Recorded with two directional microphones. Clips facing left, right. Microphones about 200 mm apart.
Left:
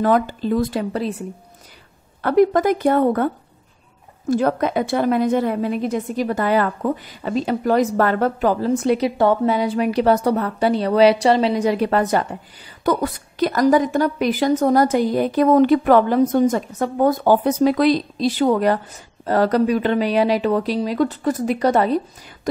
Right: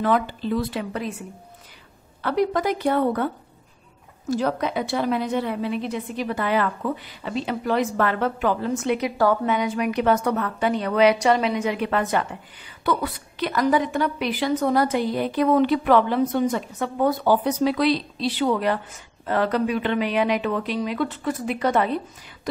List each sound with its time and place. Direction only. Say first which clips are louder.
0.0 s a woman's voice: left 4 dB; 45° left (ahead or behind)
2.2 s a woman's voice: left 7 dB; 50° left (ahead or behind)
4.3 s a woman's voice: left 5 dB; 55° left (ahead or behind); by 22.5 s 40° left (ahead or behind)